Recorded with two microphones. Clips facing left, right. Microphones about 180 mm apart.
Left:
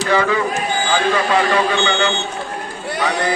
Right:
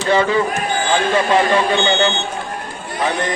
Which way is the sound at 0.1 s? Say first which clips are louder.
Right 2 dB; 25° right (ahead or behind).